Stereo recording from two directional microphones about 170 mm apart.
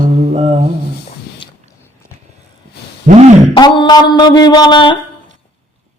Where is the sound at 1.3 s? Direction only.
70° left (ahead or behind).